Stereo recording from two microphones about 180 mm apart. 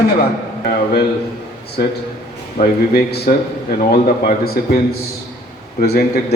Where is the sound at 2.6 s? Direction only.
55° left (ahead or behind).